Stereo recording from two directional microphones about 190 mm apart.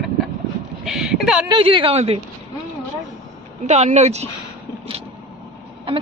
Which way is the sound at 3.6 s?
35° right (ahead or behind).